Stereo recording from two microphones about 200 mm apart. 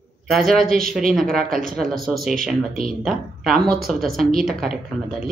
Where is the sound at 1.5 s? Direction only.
45° right (ahead or behind).